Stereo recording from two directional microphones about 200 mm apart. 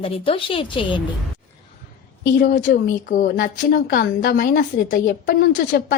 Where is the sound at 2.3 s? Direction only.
50° left (ahead or behind).